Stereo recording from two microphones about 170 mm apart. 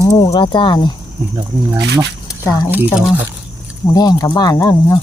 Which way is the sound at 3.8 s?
20° left (ahead or behind).